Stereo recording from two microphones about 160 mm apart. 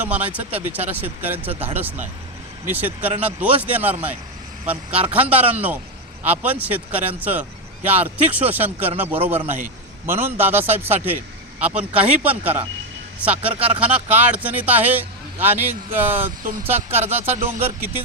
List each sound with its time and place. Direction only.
0.0 s a man's voice: 10° right (ahead or behind)
17.2 s speech: 40° right (ahead or behind)